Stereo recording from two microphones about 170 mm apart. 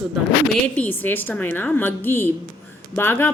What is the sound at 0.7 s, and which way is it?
A woman's voice, 10° left (ahead or behind).